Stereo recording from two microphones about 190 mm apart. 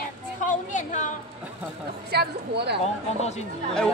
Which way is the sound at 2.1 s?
60° right (ahead or behind).